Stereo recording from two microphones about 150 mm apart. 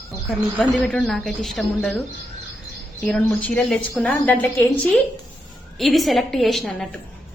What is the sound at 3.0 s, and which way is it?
A woman's voice, 10° left (ahead or behind).